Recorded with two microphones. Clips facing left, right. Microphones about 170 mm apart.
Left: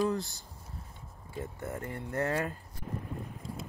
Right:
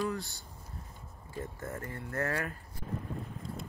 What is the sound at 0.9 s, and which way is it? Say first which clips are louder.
Speech: left 1 dB; 20° left (ahead or behind).